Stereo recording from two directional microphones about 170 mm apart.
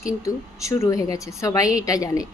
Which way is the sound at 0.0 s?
20° left (ahead or behind).